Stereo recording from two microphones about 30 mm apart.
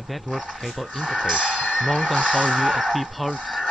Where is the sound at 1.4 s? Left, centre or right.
Left.